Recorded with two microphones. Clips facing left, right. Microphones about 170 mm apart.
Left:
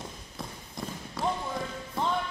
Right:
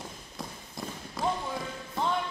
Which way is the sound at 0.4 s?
5° right (ahead or behind).